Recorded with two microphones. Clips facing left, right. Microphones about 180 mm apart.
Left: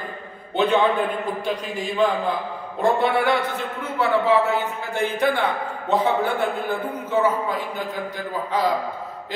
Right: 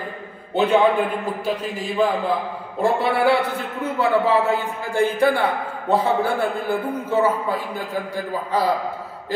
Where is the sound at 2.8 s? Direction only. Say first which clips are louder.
Even; 10° right (ahead or behind).